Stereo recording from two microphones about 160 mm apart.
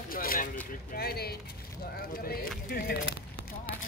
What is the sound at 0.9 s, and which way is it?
Speech, 75° left (ahead or behind).